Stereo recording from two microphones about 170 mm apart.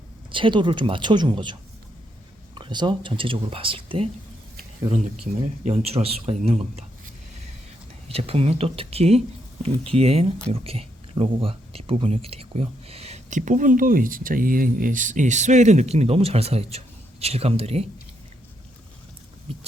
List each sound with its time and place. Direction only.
0.3 s speech: 30° right (ahead or behind)
2.6 s speech: 30° right (ahead or behind)
5.4 s speech: 40° right (ahead or behind)
8.0 s speech: 35° right (ahead or behind)